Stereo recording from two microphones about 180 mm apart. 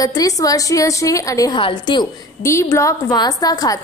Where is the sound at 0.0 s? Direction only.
20° left (ahead or behind).